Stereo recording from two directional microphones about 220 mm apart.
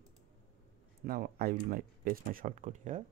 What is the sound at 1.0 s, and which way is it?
Speech, 45° right (ahead or behind).